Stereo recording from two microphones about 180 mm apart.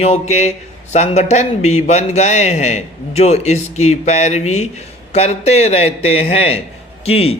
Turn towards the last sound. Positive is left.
turn(degrees=35)  # may be behind; listen again after turning